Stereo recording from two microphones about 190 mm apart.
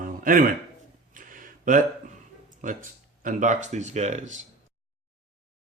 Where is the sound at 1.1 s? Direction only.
45° right (ahead or behind).